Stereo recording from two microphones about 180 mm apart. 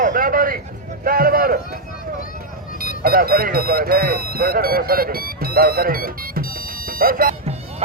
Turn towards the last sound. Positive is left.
turn(degrees=-55)  # may be behind; listen again after turning